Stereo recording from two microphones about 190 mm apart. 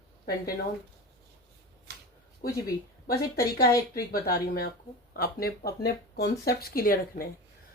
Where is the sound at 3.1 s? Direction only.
50° left (ahead or behind).